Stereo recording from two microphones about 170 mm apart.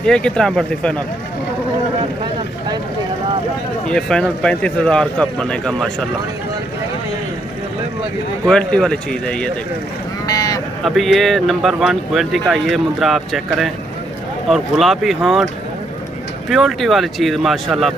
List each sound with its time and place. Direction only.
0.0 s speech: 5° left (ahead or behind)
3.8 s speech: 5° left (ahead or behind)
8.5 s speech: 5° left (ahead or behind)
10.2 s a sound: 20° left (ahead or behind)
10.8 s speech: centre (ahead or behind)
16.4 s speech: centre (ahead or behind)